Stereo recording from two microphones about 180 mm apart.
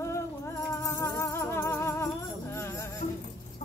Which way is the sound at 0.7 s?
15° left (ahead or behind).